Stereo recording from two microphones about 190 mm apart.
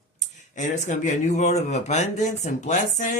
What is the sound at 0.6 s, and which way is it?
Speech, 40° left (ahead or behind).